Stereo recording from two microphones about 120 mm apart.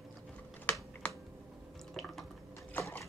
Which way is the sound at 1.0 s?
10° left (ahead or behind).